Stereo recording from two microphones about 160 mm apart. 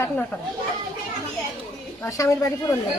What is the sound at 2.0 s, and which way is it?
Speech, 15° left (ahead or behind).